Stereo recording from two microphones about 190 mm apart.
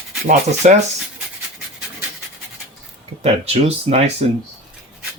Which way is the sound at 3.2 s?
35° right (ahead or behind).